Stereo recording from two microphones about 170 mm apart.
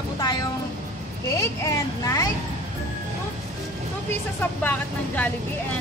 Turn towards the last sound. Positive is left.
turn(degrees=10)  # may be behind; listen again after turning